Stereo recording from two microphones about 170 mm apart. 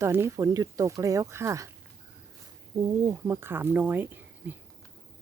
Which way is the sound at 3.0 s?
15° right (ahead or behind).